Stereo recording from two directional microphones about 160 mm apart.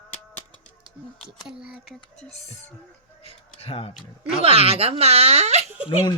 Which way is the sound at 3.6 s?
40° left (ahead or behind).